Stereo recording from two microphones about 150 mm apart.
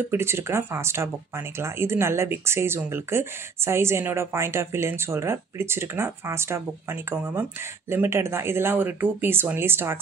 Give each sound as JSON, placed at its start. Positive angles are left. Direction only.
{"t": 0.1, "sound": "speech", "side_deg": -15}